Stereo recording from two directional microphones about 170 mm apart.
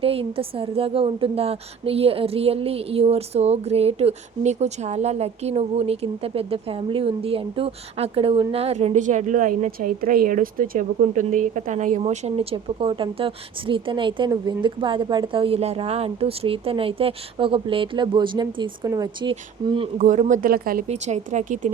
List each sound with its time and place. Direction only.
0.0 s a woman's voice: 35° right (ahead or behind)
20.0 s speech: 45° right (ahead or behind)
20.8 s speech: 40° right (ahead or behind)